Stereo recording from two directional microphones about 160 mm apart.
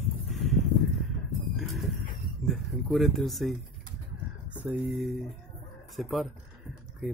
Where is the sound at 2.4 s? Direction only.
Centre (ahead or behind).